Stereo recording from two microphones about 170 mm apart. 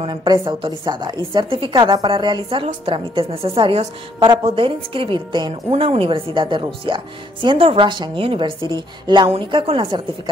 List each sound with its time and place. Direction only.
0.0 s a woman's voice: 25° right (ahead or behind)